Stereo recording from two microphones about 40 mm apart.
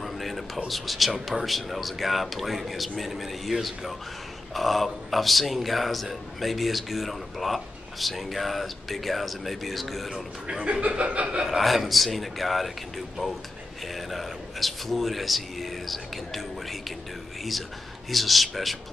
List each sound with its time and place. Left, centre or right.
0.0 s a sound: centre
0.7 s a man's voice: centre
10.1 s a man's voice: centre
10.7 s chuckle: right
11.4 s a man's voice: centre
13.9 s speech: centre
18.1 s a man's voice: centre